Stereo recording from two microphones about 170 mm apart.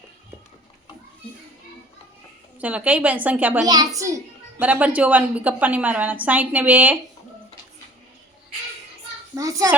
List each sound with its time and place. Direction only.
2.6 s a child's voice: 10° right (ahead or behind)
3.7 s a child's voice: 20° right (ahead or behind)
9.3 s a sound: 20° right (ahead or behind)